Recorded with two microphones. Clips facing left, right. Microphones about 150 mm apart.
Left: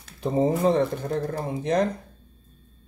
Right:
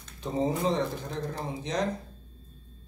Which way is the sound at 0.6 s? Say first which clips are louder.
Left 7 dB; 55° left (ahead or behind).